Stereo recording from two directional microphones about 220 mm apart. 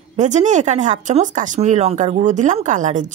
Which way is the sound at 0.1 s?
30° right (ahead or behind).